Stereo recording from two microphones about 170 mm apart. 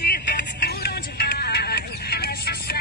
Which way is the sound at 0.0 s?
70° left (ahead or behind).